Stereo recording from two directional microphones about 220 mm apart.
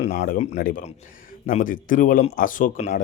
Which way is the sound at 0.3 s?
35° left (ahead or behind).